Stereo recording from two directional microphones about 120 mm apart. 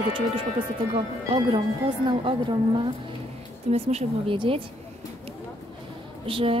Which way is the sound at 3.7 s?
60° right (ahead or behind).